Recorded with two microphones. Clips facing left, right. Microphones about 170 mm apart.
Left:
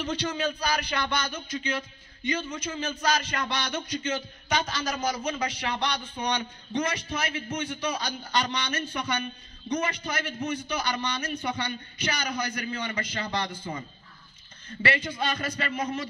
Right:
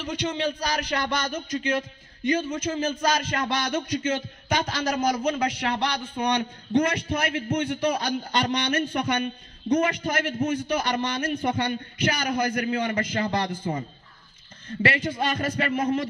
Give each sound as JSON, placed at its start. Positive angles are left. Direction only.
{"t": 0.1, "sound": "speech", "side_deg": -20}